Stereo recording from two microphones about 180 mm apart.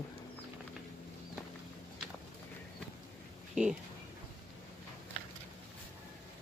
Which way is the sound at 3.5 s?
5° right (ahead or behind).